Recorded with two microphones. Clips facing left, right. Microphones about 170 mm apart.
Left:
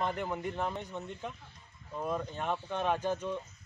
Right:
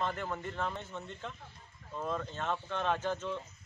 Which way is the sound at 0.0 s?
15° left (ahead or behind).